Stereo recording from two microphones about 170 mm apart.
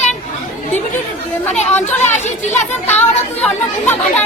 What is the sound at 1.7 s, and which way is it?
Chatter, 10° left (ahead or behind).